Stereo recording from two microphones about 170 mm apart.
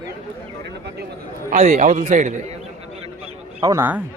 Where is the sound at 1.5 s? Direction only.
50° right (ahead or behind).